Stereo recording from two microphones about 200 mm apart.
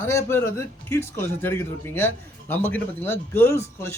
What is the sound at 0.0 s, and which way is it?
Speech, 10° left (ahead or behind).